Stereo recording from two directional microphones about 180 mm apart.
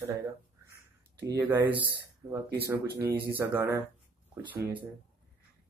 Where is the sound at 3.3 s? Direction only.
10° right (ahead or behind).